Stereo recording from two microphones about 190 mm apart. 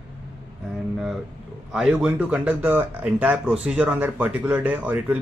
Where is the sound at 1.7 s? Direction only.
5° right (ahead or behind).